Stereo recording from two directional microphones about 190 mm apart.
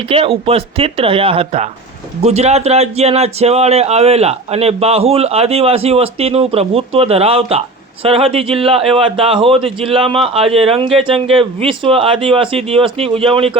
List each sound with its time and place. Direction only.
0.1 s a man's voice: 30° right (ahead or behind)